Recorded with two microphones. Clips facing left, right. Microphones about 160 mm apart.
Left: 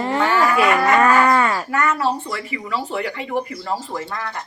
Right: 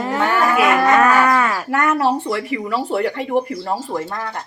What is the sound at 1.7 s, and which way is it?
Speech, 60° right (ahead or behind).